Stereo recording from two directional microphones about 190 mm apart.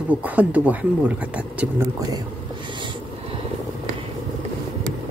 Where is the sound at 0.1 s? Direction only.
10° right (ahead or behind).